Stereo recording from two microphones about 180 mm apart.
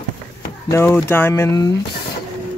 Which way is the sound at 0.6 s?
15° left (ahead or behind).